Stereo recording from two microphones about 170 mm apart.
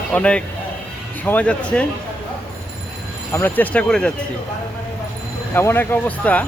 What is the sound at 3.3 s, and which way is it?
Speech, 10° left (ahead or behind).